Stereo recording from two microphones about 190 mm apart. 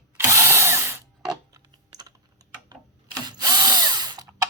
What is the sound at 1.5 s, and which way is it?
Typing, 20° right (ahead or behind).